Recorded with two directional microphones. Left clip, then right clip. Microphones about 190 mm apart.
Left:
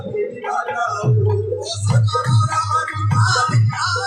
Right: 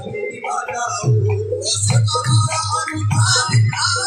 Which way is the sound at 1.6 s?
55° left (ahead or behind).